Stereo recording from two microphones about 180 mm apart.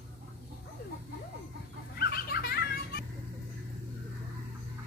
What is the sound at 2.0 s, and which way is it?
Belly laugh, 60° left (ahead or behind).